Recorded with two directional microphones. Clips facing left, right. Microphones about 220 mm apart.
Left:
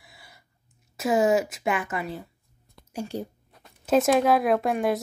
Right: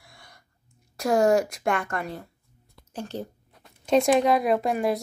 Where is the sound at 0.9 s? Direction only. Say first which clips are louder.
Right 1 dB; 5° left (ahead or behind).